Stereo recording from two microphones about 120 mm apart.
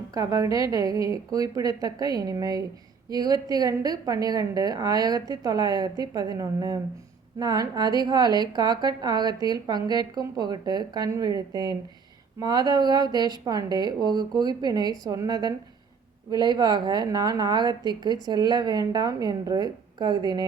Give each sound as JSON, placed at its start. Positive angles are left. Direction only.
{"t": 0.1, "sound": "a woman's voice", "side_deg": -30}